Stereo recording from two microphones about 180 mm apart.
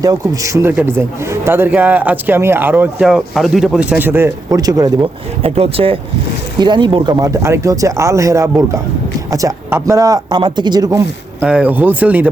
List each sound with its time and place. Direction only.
0.0 s a man's voice: 20° right (ahead or behind)
5.4 s a man's voice: 35° right (ahead or behind)
11.4 s a man's voice: 5° right (ahead or behind)